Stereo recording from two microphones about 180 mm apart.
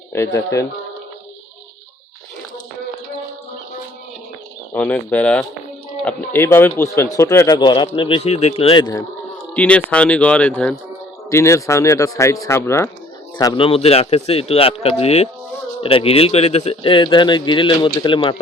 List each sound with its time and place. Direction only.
4.7 s speech: 10° left (ahead or behind)
7.7 s a man's voice: 30° left (ahead or behind)
9.6 s speech: 5° left (ahead or behind)
13.4 s a man's voice: 30° left (ahead or behind)